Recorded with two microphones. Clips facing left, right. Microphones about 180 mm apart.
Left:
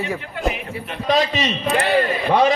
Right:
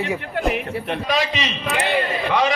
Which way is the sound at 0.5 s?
65° right (ahead or behind).